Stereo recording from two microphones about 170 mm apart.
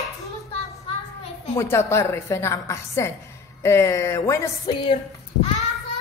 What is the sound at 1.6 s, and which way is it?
A woman's voice, 15° left (ahead or behind).